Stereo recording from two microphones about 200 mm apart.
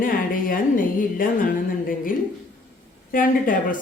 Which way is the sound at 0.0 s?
45° left (ahead or behind).